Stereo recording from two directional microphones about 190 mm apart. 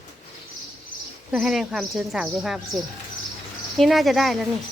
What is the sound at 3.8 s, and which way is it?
Speech, centre (ahead or behind).